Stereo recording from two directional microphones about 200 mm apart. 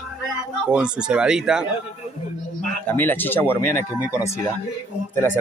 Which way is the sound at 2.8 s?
10° left (ahead or behind).